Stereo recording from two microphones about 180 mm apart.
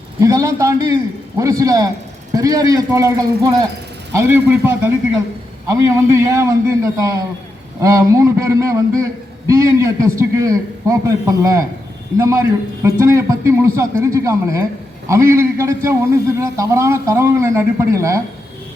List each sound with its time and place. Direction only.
0.2 s a man's voice: 15° right (ahead or behind)